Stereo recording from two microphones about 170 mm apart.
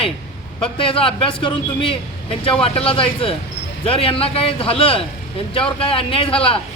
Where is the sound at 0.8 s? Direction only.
30° left (ahead or behind).